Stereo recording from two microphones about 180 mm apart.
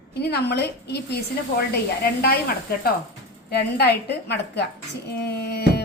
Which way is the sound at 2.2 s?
60° left (ahead or behind).